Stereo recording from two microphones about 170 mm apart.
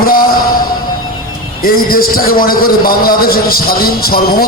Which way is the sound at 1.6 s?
60° left (ahead or behind).